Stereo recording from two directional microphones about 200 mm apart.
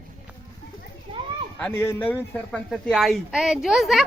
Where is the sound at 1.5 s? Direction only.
10° left (ahead or behind).